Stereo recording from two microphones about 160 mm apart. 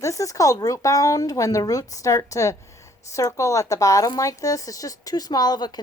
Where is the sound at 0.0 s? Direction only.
20° left (ahead or behind).